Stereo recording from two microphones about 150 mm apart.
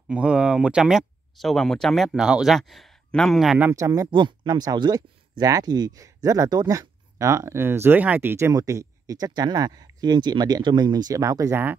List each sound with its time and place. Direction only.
0.1 s speech: 5° right (ahead or behind)
3.6 s speech: 20° right (ahead or behind)